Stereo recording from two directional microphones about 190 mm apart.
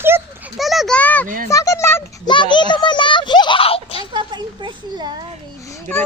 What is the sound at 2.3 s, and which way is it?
A child's voice, 25° left (ahead or behind).